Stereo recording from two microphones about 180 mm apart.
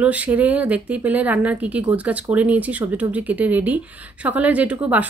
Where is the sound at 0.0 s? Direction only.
10° right (ahead or behind).